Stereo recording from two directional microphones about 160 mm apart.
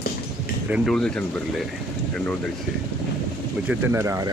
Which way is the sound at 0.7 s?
Centre (ahead or behind).